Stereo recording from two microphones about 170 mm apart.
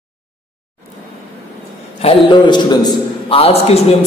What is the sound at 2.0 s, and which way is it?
A man's voice, 30° left (ahead or behind).